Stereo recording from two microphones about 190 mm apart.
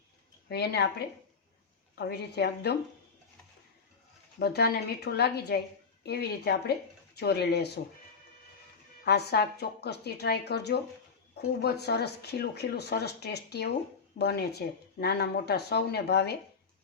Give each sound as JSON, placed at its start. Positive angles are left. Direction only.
{"t": 0.4, "sound": "speech", "side_deg": 60}
{"t": 4.4, "sound": "speech", "side_deg": 60}
{"t": 9.0, "sound": "speech", "side_deg": 55}